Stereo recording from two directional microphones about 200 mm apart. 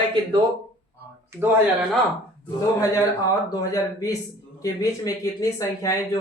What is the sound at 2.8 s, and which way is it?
A man's voice, 15° left (ahead or behind).